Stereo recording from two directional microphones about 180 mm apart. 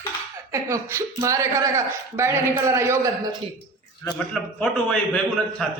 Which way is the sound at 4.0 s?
5° left (ahead or behind).